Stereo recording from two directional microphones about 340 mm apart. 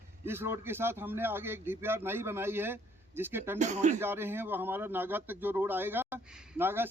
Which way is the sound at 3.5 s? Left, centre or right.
Right.